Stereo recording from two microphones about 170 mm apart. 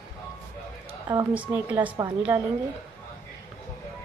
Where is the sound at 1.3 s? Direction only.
10° right (ahead or behind).